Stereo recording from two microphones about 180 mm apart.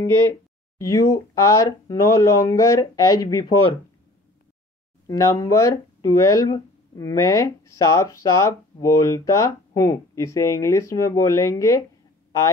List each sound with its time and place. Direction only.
0.7 s speech: 15° left (ahead or behind)
5.0 s speech: 15° left (ahead or behind)